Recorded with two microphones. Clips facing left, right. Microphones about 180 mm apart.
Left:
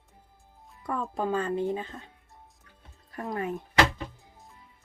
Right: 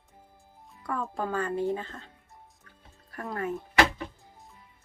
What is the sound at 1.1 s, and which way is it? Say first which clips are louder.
Speech: left 3 dB; 20° left (ahead or behind).